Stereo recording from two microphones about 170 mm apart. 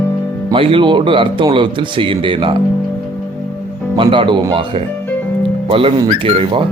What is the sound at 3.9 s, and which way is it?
Speech, 30° right (ahead or behind).